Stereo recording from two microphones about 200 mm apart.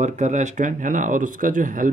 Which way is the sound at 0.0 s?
35° right (ahead or behind).